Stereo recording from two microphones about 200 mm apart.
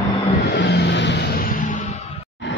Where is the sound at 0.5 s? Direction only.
55° left (ahead or behind); by 2.3 s 35° left (ahead or behind).